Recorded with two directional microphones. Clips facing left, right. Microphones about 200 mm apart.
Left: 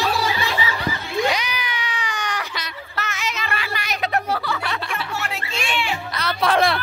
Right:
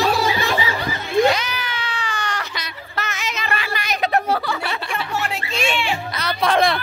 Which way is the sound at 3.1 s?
20° right (ahead or behind).